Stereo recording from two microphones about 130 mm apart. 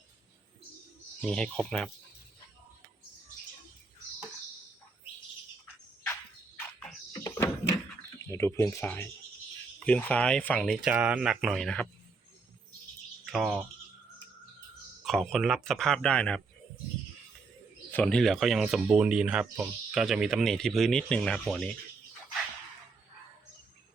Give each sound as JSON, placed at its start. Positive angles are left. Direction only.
{"t": 1.2, "sound": "speech", "side_deg": 5}
{"t": 7.1, "sound": "a sound", "side_deg": 25}
{"t": 8.2, "sound": "speech", "side_deg": 20}
{"t": 10.8, "sound": "speech", "side_deg": -10}
{"t": 13.3, "sound": "speech", "side_deg": -5}
{"t": 15.0, "sound": "speech", "side_deg": 0}
{"t": 17.9, "sound": "speech", "side_deg": 5}